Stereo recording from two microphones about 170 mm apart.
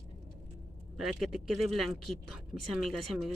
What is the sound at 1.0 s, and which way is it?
Speech, centre (ahead or behind).